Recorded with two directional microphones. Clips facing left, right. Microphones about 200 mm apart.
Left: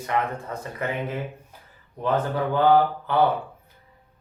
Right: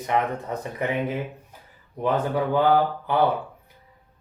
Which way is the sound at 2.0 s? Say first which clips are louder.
Right 1 dB; 15° right (ahead or behind).